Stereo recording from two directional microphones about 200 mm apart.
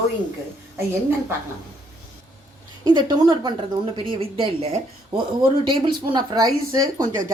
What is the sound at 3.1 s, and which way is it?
Speech, 20° right (ahead or behind).